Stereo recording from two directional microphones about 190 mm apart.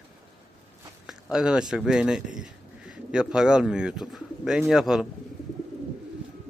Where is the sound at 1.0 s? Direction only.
5° right (ahead or behind).